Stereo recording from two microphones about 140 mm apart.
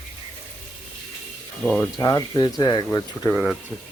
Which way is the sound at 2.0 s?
30° left (ahead or behind).